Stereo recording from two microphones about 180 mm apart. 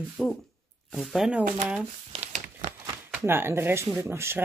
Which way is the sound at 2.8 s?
15° right (ahead or behind).